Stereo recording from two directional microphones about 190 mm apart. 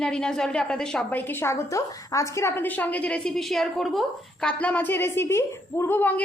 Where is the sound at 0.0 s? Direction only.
5° left (ahead or behind).